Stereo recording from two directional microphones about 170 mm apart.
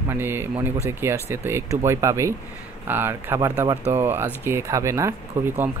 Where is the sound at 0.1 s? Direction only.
15° right (ahead or behind).